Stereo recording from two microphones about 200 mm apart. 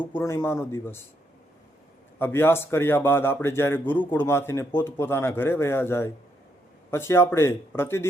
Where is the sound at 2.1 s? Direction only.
10° left (ahead or behind).